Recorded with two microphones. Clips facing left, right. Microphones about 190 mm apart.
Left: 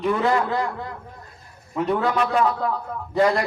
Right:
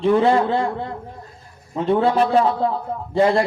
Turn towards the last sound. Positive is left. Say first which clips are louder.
# right 3 dB
turn(degrees=-30)  # may be behind; listen again after turning